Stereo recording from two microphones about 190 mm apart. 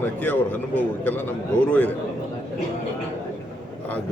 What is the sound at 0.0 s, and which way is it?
Speech, 10° left (ahead or behind).